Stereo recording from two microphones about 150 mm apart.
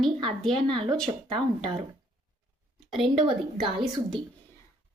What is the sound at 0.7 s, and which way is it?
Speech, 30° right (ahead or behind).